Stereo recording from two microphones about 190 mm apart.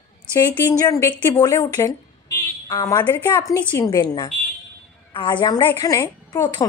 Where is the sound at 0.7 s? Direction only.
15° left (ahead or behind).